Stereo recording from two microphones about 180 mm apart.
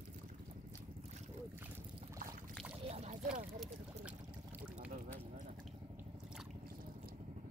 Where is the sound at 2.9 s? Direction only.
35° right (ahead or behind).